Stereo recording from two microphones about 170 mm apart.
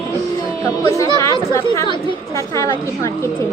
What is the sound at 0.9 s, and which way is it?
A woman's voice, 20° left (ahead or behind).